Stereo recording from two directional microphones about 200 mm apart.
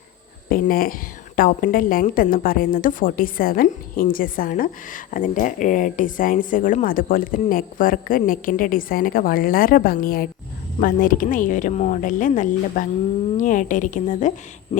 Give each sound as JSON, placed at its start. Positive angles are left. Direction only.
{"t": 0.4, "sound": "a woman's voice", "side_deg": 45}